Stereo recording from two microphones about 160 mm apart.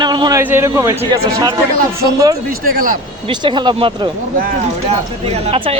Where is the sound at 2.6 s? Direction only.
60° right (ahead or behind).